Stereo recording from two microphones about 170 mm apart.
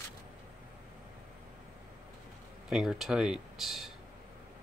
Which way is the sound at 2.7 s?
Centre (ahead or behind).